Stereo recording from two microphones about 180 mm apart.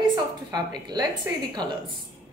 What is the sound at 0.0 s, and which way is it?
A woman's voice, 20° right (ahead or behind).